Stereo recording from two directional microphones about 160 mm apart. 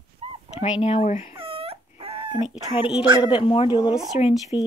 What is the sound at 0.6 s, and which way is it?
Speech, 40° left (ahead or behind).